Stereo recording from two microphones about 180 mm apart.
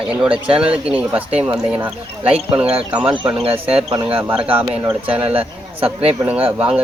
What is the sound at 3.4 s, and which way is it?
Speech, 30° right (ahead or behind).